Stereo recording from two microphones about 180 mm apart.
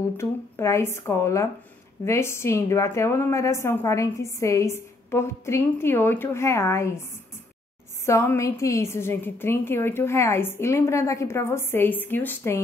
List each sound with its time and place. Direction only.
0.2 s a woman's voice: 15° left (ahead or behind)
8.0 s a woman's voice: 15° left (ahead or behind)